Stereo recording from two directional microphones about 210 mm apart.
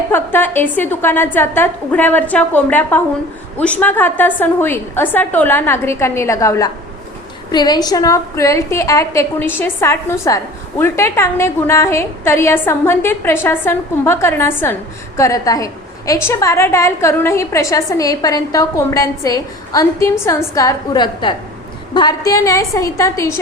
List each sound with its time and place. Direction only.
0.1 s a woman's voice: 10° left (ahead or behind)